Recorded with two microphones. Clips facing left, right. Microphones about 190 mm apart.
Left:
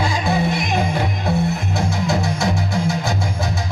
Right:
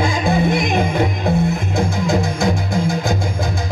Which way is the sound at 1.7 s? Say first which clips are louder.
Right 4 dB; 55° right (ahead or behind).